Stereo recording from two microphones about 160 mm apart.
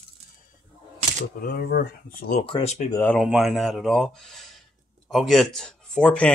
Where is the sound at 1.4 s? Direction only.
70° left (ahead or behind).